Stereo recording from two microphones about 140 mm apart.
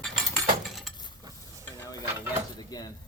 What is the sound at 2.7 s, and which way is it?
Speech, 25° left (ahead or behind).